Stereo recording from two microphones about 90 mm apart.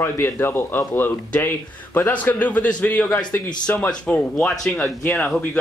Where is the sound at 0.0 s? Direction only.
25° left (ahead or behind).